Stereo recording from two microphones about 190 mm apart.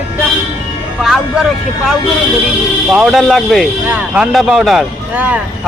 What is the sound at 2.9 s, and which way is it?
Speech, centre (ahead or behind).